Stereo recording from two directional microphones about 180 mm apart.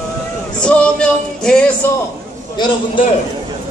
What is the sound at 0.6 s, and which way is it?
Music, 5° left (ahead or behind).